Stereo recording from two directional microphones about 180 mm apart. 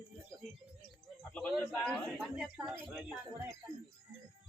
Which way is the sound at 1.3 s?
5° left (ahead or behind).